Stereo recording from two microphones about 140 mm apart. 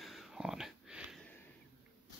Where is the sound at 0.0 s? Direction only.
Centre (ahead or behind).